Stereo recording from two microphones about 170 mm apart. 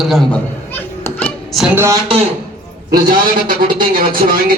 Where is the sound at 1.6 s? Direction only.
10° right (ahead or behind).